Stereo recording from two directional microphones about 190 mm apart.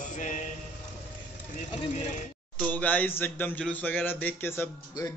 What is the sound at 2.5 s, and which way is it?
A man's voice, 10° left (ahead or behind).